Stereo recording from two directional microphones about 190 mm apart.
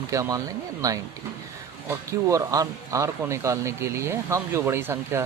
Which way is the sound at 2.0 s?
15° right (ahead or behind).